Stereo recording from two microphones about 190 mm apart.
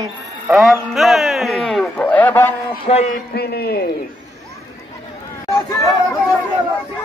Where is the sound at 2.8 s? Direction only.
35° left (ahead or behind).